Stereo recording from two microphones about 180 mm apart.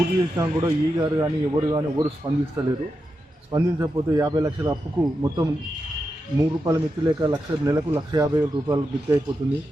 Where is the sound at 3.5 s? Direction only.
20° right (ahead or behind).